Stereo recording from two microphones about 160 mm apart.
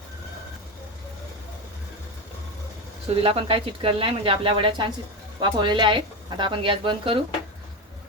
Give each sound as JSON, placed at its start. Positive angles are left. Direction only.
{"t": 3.2, "sound": "speech", "side_deg": -35}